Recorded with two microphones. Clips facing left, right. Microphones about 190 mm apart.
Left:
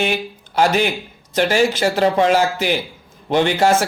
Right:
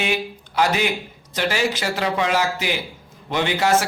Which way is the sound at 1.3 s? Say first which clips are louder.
Left 6 dB; 45° left (ahead or behind).